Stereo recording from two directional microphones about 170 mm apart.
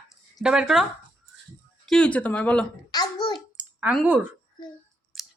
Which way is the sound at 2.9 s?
25° left (ahead or behind).